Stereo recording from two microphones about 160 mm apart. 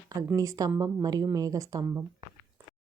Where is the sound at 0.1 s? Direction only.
20° right (ahead or behind).